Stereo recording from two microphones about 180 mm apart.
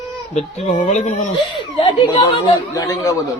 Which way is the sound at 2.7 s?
20° left (ahead or behind).